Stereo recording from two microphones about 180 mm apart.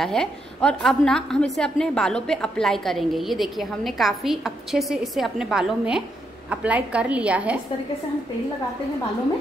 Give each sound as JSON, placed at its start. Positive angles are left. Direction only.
{"t": 0.0, "sound": "a woman's voice", "side_deg": 5}